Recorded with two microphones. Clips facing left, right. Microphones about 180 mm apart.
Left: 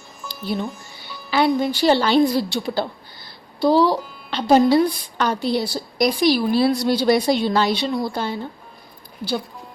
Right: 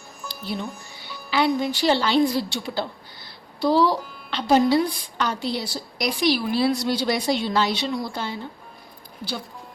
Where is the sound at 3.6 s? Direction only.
25° left (ahead or behind).